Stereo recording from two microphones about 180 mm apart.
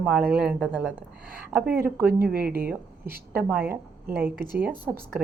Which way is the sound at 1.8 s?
10° right (ahead or behind).